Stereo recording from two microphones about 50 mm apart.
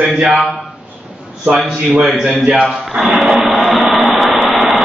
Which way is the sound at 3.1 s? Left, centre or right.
Centre.